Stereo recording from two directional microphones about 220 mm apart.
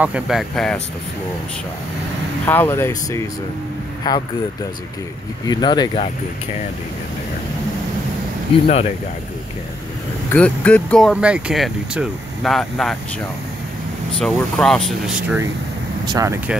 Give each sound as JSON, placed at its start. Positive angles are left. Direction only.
{"t": 0.0, "sound": "speech", "side_deg": -5}
{"t": 2.4, "sound": "speech", "side_deg": 10}
{"t": 5.5, "sound": "speech", "side_deg": 20}
{"t": 8.6, "sound": "speech", "side_deg": 30}
{"t": 10.3, "sound": "speech", "side_deg": 5}
{"t": 14.2, "sound": "speech", "side_deg": 0}